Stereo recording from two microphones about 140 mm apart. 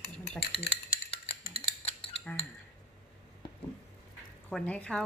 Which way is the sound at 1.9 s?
45° left (ahead or behind).